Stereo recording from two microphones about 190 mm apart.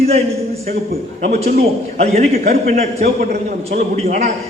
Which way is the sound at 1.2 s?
45° right (ahead or behind).